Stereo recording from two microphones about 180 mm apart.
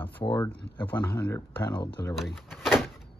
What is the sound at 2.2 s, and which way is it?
Door, centre (ahead or behind).